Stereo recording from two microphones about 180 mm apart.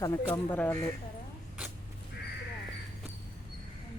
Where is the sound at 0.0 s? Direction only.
20° left (ahead or behind).